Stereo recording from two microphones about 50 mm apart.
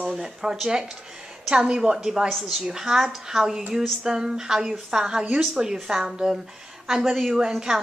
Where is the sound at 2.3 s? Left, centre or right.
Centre.